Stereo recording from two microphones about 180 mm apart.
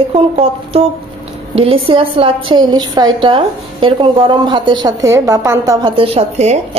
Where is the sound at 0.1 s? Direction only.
35° right (ahead or behind).